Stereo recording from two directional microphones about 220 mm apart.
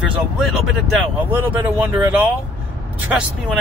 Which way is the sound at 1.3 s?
10° right (ahead or behind).